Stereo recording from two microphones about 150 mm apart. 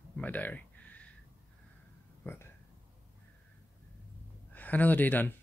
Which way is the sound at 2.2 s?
15° left (ahead or behind).